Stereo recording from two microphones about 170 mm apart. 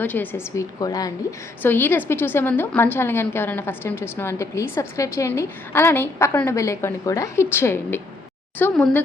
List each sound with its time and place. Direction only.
0.0 s a woman's voice: 10° left (ahead or behind)